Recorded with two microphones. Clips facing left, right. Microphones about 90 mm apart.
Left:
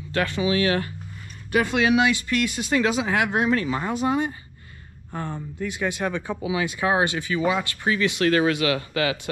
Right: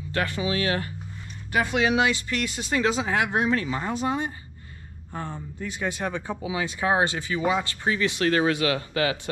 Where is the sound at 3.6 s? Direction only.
45° left (ahead or behind).